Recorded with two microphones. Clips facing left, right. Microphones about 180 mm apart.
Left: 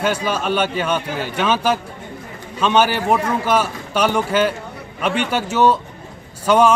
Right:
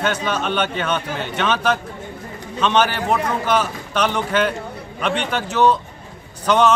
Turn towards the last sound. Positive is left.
turn(degrees=10)  # may be behind; listen again after turning